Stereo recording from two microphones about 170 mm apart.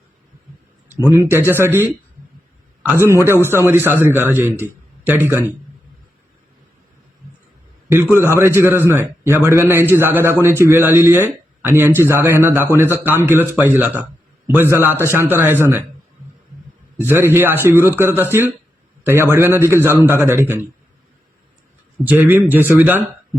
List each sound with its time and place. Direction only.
0.9 s speech: 15° right (ahead or behind)
3.1 s speech: 15° right (ahead or behind)
8.1 s speech: 15° right (ahead or behind)
17.0 s speech: 15° right (ahead or behind)
22.0 s speech: 10° right (ahead or behind)